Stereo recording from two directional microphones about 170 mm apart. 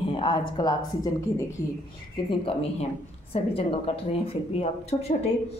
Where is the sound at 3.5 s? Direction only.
35° left (ahead or behind).